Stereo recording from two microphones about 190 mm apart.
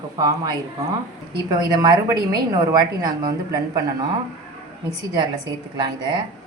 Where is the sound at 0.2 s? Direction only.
20° right (ahead or behind).